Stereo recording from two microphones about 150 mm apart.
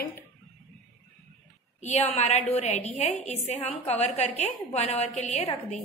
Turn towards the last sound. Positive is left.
turn(degrees=45)  # may be behind; listen again after turning